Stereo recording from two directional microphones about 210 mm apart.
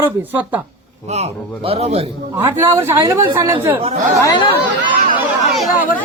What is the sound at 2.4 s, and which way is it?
A woman's voice, 10° right (ahead or behind).